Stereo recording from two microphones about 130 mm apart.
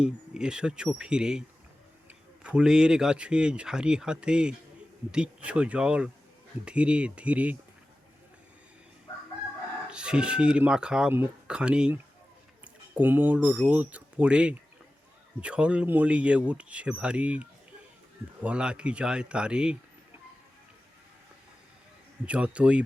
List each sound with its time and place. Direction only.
0.0 s speech: 5° right (ahead or behind)
9.9 s speech: 5° right (ahead or behind)
22.3 s speech: 10° right (ahead or behind)